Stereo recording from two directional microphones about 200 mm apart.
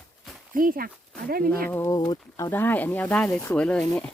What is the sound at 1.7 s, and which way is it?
Speech, 15° left (ahead or behind).